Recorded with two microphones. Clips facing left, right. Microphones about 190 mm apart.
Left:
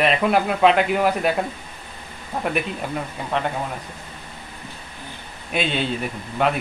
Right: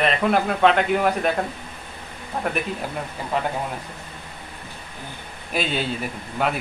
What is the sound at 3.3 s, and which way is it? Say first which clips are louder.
Speech: left 1 dB; 5° right (ahead or behind).